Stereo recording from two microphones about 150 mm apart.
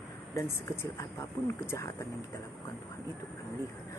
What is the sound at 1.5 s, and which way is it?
Speech, 20° left (ahead or behind).